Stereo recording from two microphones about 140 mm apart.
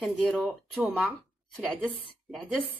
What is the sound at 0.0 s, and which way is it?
Speech, centre (ahead or behind).